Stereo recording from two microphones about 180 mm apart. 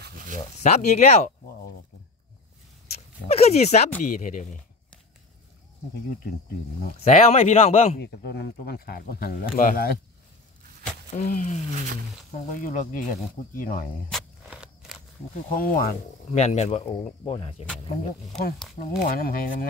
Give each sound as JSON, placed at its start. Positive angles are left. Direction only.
{"t": 0.0, "sound": "a sound", "side_deg": -50}
{"t": 0.6, "sound": "speech", "side_deg": 40}
{"t": 3.3, "sound": "speech", "side_deg": 35}
{"t": 7.0, "sound": "speech", "side_deg": 40}
{"t": 8.0, "sound": "speech", "side_deg": 65}
{"t": 11.1, "sound": "speech", "side_deg": 45}
{"t": 14.0, "sound": "a sound", "side_deg": 0}
{"t": 15.3, "sound": "speech", "side_deg": 50}
{"t": 16.3, "sound": "speech", "side_deg": 35}
{"t": 18.8, "sound": "speech", "side_deg": 50}